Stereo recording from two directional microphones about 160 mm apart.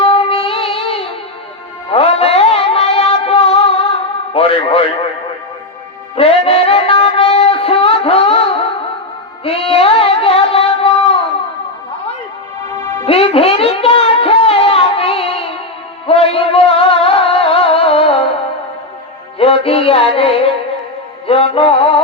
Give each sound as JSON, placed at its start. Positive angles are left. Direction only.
{"t": 0.0, "sound": "music", "side_deg": 35}
{"t": 6.1, "sound": "music", "side_deg": 35}
{"t": 13.1, "sound": "a sound", "side_deg": 35}
{"t": 16.0, "sound": "music", "side_deg": 35}
{"t": 19.4, "sound": "music", "side_deg": 35}